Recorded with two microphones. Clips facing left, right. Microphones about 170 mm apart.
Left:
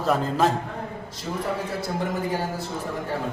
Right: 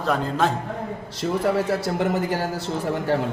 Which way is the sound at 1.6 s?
75° right (ahead or behind).